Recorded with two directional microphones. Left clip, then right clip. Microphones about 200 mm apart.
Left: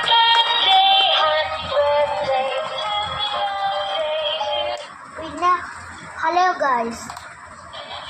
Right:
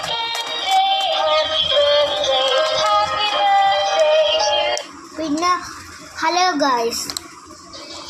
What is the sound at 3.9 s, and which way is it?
Music, 30° right (ahead or behind).